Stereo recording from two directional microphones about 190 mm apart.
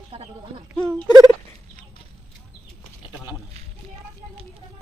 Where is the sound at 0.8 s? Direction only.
5° left (ahead or behind).